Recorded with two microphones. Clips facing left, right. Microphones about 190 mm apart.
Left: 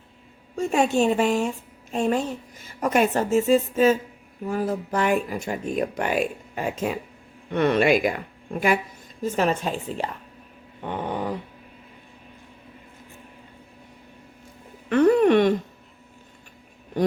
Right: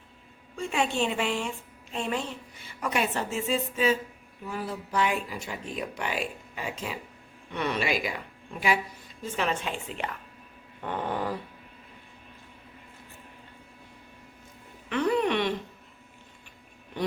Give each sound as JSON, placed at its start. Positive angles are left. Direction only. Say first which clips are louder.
{"t": 0.5, "sound": "a woman's voice", "louder": "left 7 dB", "side_deg": 45}
{"t": 10.8, "sound": "dog", "louder": "left 3 dB", "side_deg": 15}
{"t": 14.8, "sound": "music", "louder": "left 9 dB", "side_deg": 50}